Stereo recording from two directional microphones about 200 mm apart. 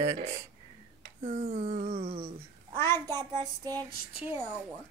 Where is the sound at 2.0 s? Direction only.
30° right (ahead or behind).